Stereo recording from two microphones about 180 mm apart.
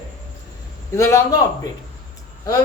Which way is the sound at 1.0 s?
15° left (ahead or behind).